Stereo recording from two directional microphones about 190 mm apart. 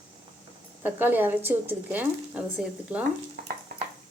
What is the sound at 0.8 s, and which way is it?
Speech, 10° right (ahead or behind).